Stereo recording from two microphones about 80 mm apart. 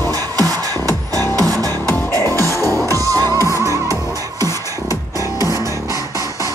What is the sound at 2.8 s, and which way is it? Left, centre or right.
Music, right.